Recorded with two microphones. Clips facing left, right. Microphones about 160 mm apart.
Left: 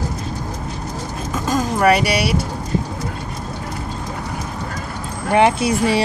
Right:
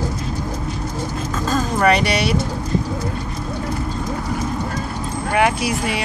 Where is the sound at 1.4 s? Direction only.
10° left (ahead or behind).